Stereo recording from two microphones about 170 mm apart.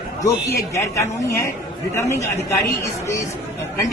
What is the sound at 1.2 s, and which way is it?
A man's voice, 15° left (ahead or behind).